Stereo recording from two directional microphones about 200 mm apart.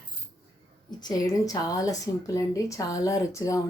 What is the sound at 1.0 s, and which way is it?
A woman's voice, 15° left (ahead or behind).